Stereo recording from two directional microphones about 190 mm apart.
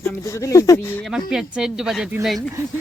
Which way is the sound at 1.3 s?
5° right (ahead or behind).